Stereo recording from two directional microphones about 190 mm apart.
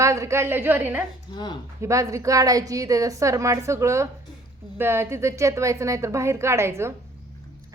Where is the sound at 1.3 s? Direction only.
25° left (ahead or behind).